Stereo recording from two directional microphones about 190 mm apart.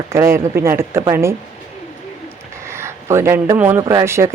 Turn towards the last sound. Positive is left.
turn(degrees=-15)  # may be behind; listen again after turning